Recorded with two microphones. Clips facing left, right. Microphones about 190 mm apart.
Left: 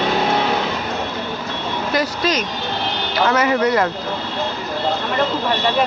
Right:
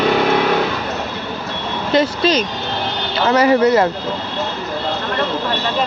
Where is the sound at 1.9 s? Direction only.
25° right (ahead or behind).